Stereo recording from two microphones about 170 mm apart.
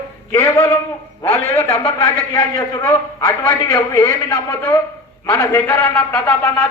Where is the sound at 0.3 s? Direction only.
15° left (ahead or behind).